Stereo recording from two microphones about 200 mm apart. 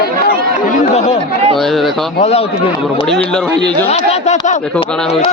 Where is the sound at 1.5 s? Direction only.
Centre (ahead or behind).